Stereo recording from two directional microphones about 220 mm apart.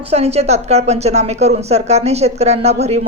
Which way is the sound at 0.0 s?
30° right (ahead or behind).